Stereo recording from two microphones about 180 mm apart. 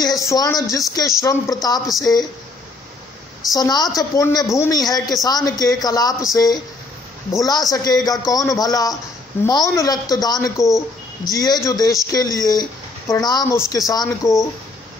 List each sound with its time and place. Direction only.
0.0 s a woman's voice: 20° left (ahead or behind)
3.5 s a woman's voice: 20° left (ahead or behind)